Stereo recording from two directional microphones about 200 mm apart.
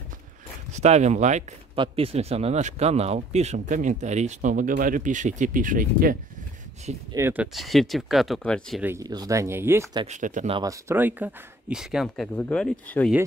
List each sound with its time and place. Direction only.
0.7 s speech: 35° right (ahead or behind)
7.1 s speech: 10° right (ahead or behind)
7.5 s speech: centre (ahead or behind)
8.8 s speech: 15° right (ahead or behind)
10.0 s speech: 40° right (ahead or behind)
10.5 s speech: 15° right (ahead or behind); by 13.1 s 5° left (ahead or behind)